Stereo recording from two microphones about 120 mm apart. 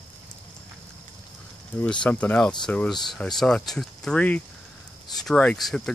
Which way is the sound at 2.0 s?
10° left (ahead or behind).